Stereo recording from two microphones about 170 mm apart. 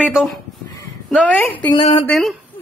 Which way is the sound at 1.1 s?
10° left (ahead or behind).